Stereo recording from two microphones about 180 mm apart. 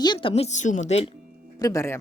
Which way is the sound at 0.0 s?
25° left (ahead or behind).